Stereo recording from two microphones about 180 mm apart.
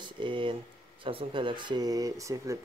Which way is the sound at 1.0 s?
30° right (ahead or behind).